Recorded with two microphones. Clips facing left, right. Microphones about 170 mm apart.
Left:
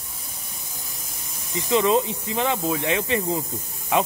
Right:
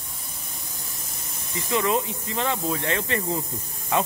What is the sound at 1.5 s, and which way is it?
Speech, 20° left (ahead or behind).